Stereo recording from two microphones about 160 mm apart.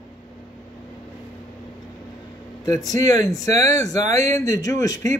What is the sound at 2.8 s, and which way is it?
A man's voice, 20° left (ahead or behind).